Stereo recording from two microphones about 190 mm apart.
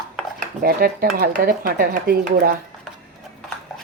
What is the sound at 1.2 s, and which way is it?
Speech, 50° right (ahead or behind).